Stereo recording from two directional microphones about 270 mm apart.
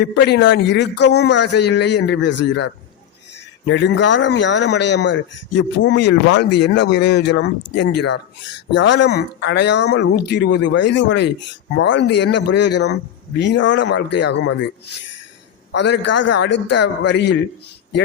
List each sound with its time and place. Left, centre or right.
0.0 s a man's voice: left
3.7 s a man's voice: left
15.7 s a man's voice: left